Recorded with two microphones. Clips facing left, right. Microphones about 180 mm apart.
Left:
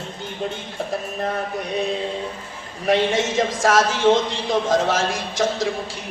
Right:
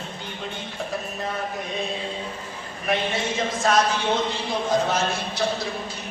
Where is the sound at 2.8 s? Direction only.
85° left.